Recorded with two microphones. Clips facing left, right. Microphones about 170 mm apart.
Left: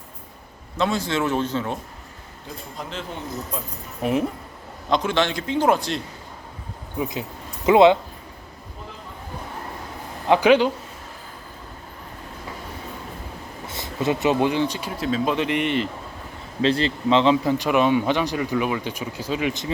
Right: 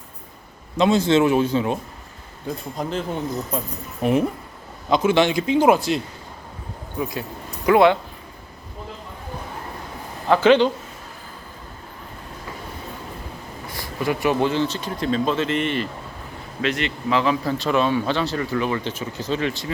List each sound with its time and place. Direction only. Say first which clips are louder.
0.8 s a man's voice: right 6 dB; 20° right (ahead or behind)
1.3 s a man's voice: right 5 dB; 10° right (ahead or behind)
2.8 s speech: right 7 dB; 45° right (ahead or behind)
4.0 s a man's voice: right 3 dB; centre (ahead or behind)
7.0 s speech: even; 20° left (ahead or behind)
10.2 s speech: right 1 dB; 15° left (ahead or behind)
13.7 s speech: left 1 dB; 20° left (ahead or behind)
16.6 s speech: left 4 dB; 30° left (ahead or behind)